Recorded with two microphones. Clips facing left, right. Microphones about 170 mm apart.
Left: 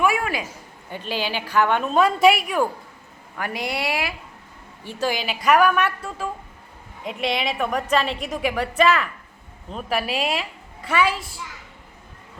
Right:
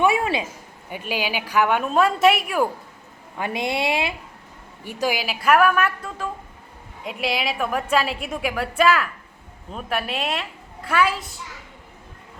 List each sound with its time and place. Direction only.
0.0 s a man's voice: 25° right (ahead or behind)
0.9 s a woman's voice: 10° right (ahead or behind)
3.3 s a woman's voice: 20° right (ahead or behind)
4.9 s a woman's voice: 10° right (ahead or behind)